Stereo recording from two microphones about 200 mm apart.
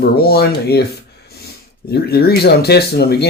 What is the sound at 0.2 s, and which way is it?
Speech, 50° left (ahead or behind).